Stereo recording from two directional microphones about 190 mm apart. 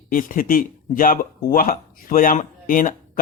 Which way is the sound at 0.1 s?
45° left (ahead or behind).